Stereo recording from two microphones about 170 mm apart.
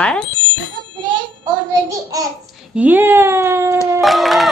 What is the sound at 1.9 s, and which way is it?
Speech, 20° right (ahead or behind).